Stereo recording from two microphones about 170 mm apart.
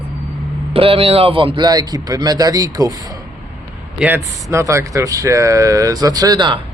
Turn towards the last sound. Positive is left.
turn(degrees=-25)  # may be behind; listen again after turning